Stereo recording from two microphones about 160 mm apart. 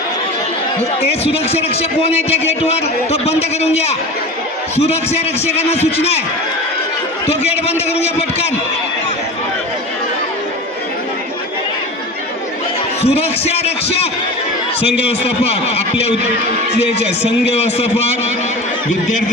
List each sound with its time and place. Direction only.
1.2 s a man's voice: 40° left (ahead or behind)
7.9 s a man's voice: 40° left (ahead or behind)
13.0 s a man's voice: 40° left (ahead or behind)